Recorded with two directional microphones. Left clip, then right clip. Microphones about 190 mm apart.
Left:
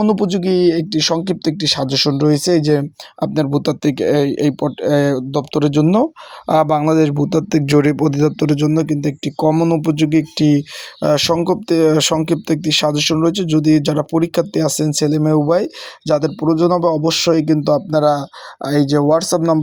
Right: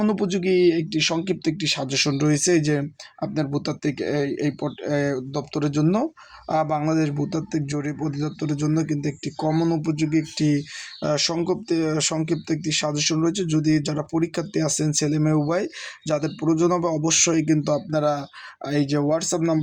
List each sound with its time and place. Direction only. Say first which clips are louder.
0.0 s speech: left 7 dB; 30° left (ahead or behind)